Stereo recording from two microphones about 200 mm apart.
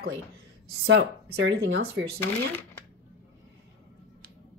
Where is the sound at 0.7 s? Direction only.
65° right (ahead or behind).